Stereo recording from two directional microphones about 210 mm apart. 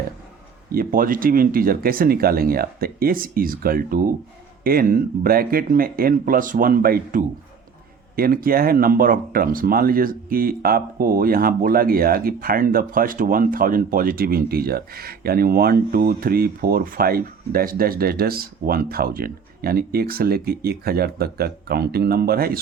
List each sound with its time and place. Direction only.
0.7 s speech: 45° right (ahead or behind)